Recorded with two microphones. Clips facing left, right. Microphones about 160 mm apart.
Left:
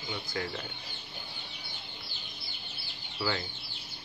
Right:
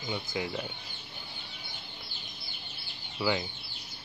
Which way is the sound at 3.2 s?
15° right (ahead or behind).